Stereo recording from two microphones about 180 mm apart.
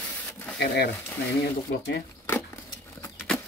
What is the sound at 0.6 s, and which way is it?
Speech, 65° left (ahead or behind).